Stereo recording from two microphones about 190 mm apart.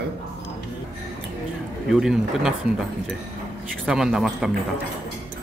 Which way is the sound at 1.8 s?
Centre (ahead or behind).